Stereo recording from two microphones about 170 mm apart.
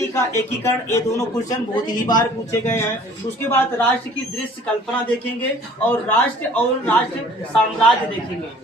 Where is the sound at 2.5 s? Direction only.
15° left (ahead or behind).